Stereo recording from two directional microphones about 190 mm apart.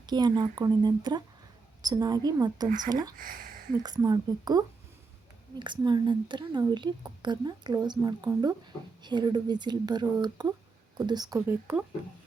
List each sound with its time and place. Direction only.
0.0 s a woman's voice: 20° right (ahead or behind)
2.6 s speech: 45° right (ahead or behind)
2.9 s a woman's voice: 20° right (ahead or behind)
3.2 s speech: 45° right (ahead or behind)
3.8 s a woman's voice: 20° right (ahead or behind)
11.3 s speech: 10° right (ahead or behind)